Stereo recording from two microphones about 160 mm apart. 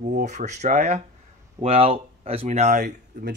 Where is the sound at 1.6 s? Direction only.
35° right (ahead or behind); by 3.3 s 55° right (ahead or behind).